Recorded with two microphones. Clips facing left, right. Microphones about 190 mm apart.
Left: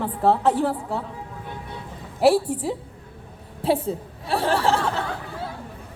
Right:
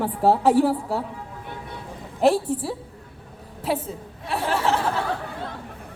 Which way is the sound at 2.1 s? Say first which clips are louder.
Left 1 dB; 10° left (ahead or behind).